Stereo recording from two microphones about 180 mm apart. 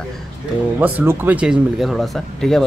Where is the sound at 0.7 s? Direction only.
10° right (ahead or behind).